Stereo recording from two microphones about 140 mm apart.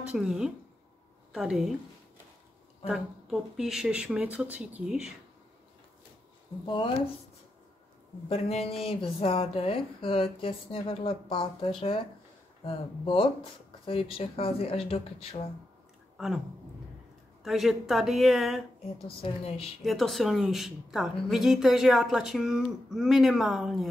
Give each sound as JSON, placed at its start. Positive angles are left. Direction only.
{"t": 0.1, "sound": "a woman's voice", "side_deg": -5}
{"t": 2.9, "sound": "a woman's voice", "side_deg": -5}
{"t": 6.6, "sound": "speech", "side_deg": 35}
{"t": 8.3, "sound": "a woman's voice", "side_deg": 45}
{"t": 17.4, "sound": "a woman's voice", "side_deg": 0}
{"t": 18.9, "sound": "a woman's voice", "side_deg": 45}
{"t": 19.8, "sound": "a woman's voice", "side_deg": 0}